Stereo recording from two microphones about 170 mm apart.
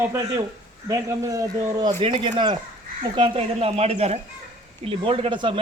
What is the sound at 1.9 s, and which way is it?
Speech, 35° right (ahead or behind).